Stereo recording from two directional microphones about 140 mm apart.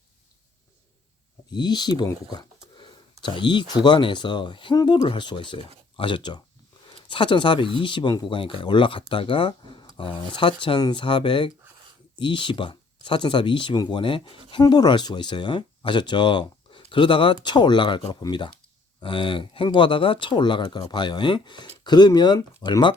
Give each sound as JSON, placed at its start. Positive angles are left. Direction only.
{"t": 1.5, "sound": "speech", "side_deg": 30}